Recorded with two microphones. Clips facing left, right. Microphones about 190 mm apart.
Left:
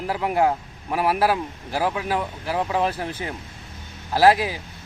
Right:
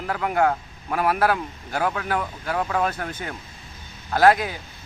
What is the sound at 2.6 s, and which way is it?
Speech, 20° left (ahead or behind).